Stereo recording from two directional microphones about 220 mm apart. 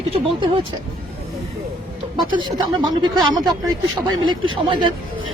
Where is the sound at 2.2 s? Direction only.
20° right (ahead or behind).